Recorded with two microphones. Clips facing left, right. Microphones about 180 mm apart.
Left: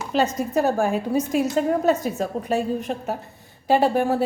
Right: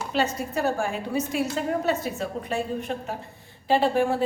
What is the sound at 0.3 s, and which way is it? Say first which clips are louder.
A woman's voice: left 5 dB; 40° left (ahead or behind).